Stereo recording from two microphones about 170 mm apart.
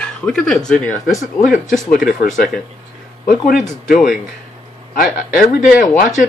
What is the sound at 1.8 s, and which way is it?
Speech, 50° left (ahead or behind).